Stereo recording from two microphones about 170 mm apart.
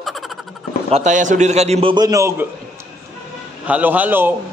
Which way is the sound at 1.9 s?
20° right (ahead or behind).